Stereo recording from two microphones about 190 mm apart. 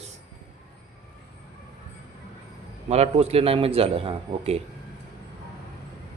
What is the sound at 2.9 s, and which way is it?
A man's voice, 35° right (ahead or behind).